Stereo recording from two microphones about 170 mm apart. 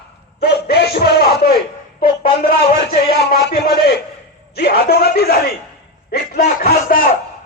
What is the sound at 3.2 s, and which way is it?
Music, 75° left (ahead or behind).